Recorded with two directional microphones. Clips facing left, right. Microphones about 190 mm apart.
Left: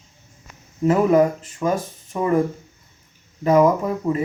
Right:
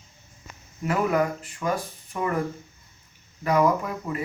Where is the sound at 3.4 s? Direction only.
25° left (ahead or behind).